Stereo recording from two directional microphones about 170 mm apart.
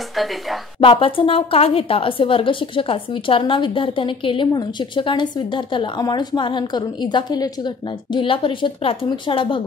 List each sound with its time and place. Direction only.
0.1 s a woman's voice: centre (ahead or behind)
0.7 s a woman's voice: 30° left (ahead or behind)